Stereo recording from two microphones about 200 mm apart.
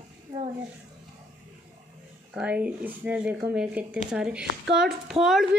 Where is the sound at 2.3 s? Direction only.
5° right (ahead or behind).